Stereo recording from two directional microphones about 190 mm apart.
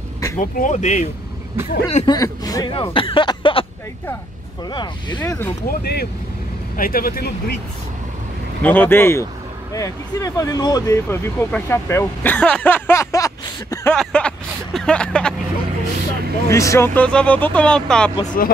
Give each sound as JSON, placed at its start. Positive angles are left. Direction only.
{"t": 0.4, "sound": "speech", "side_deg": 40}
{"t": 2.0, "sound": "speech", "side_deg": 20}
{"t": 4.6, "sound": "speech", "side_deg": 25}
{"t": 5.7, "sound": "speech", "side_deg": 50}
{"t": 8.6, "sound": "speech", "side_deg": 10}
{"t": 13.9, "sound": "vehicle", "side_deg": 5}
{"t": 16.4, "sound": "speech", "side_deg": 15}
{"t": 18.4, "sound": "speech", "side_deg": 50}